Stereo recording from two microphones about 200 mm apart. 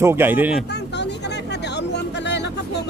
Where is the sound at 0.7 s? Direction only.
60° left (ahead or behind).